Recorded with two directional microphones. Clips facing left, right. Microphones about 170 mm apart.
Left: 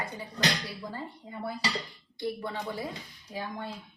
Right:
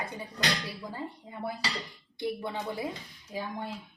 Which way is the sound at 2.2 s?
15° right (ahead or behind).